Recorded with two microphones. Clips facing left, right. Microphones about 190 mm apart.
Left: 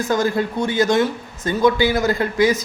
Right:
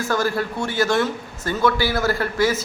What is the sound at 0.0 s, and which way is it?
Speech, 20° left (ahead or behind).